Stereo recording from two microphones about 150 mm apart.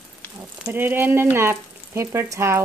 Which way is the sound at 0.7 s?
15° right (ahead or behind).